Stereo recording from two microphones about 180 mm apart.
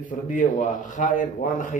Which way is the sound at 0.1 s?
45° left (ahead or behind).